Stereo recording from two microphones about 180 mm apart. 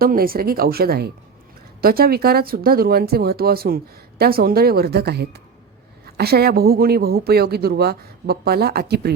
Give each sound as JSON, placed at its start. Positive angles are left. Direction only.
{"t": 0.0, "sound": "speech", "side_deg": -55}